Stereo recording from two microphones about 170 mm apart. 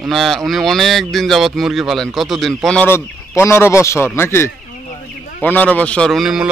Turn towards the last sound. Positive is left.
turn(degrees=0)  # may be behind; listen again after turning